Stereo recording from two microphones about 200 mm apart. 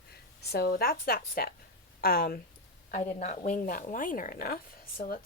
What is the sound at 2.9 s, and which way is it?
A woman's voice, 35° left (ahead or behind).